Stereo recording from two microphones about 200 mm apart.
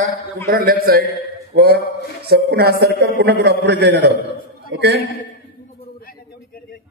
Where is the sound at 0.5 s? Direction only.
45° right (ahead or behind).